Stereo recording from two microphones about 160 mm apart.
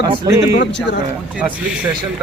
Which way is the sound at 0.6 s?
90° left.